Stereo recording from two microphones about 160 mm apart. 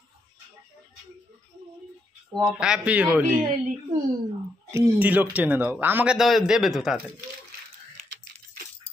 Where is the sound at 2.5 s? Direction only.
5° right (ahead or behind).